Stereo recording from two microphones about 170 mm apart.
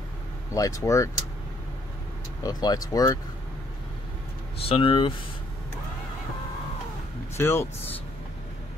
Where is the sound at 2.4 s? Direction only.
25° left (ahead or behind).